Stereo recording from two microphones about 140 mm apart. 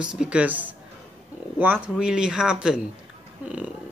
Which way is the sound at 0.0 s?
5° right (ahead or behind).